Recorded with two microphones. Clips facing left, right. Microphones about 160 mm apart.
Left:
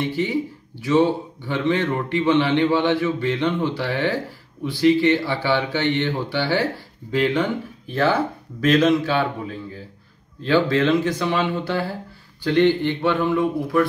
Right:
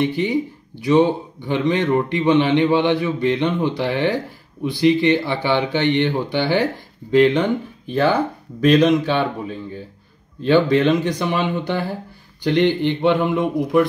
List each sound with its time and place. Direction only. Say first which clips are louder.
0.0 s speech: right 3 dB; 15° right (ahead or behind)